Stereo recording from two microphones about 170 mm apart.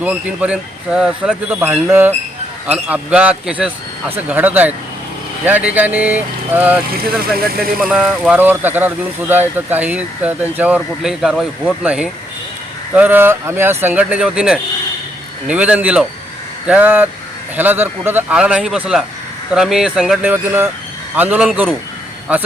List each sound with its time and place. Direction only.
0.0 s speech: 10° right (ahead or behind)
6.9 s speech: 60° right (ahead or behind)
7.8 s speech: 5° right (ahead or behind)